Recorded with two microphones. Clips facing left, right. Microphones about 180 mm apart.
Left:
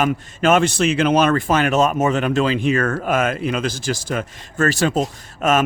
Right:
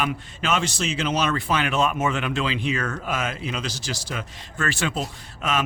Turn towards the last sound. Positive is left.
turn(degrees=45)  # may be behind; listen again after turning